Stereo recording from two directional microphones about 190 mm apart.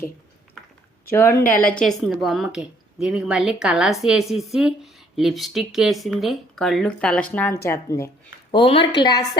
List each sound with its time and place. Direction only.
1.1 s a woman's voice: 15° left (ahead or behind)
8.5 s a woman's voice: 30° left (ahead or behind)